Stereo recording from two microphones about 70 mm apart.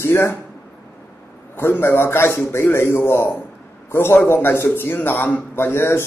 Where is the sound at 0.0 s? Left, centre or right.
Left.